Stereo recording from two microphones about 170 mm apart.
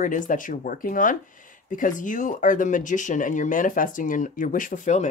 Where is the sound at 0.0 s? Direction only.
50° left (ahead or behind).